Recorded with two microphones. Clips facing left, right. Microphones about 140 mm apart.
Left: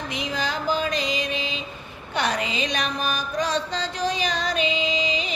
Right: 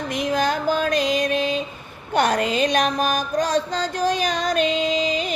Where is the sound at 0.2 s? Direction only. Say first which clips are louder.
Right 7 dB; 50° right (ahead or behind).